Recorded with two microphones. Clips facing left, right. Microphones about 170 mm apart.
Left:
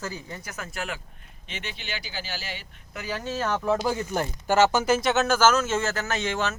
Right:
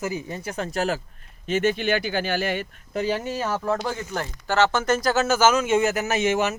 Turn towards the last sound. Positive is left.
turn(degrees=-15)  # may be behind; listen again after turning